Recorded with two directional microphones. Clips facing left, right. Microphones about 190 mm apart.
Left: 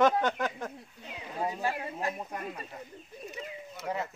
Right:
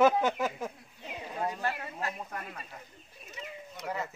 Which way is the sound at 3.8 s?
5° left (ahead or behind).